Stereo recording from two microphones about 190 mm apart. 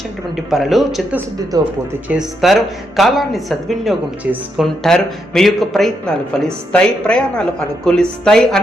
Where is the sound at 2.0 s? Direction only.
5° right (ahead or behind).